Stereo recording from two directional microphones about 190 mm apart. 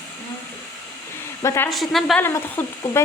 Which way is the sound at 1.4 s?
15° left (ahead or behind).